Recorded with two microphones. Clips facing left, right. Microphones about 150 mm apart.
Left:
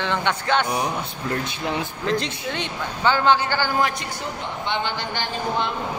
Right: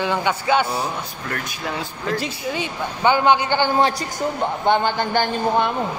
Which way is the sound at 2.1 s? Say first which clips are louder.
Right 1 dB; 5° right (ahead or behind).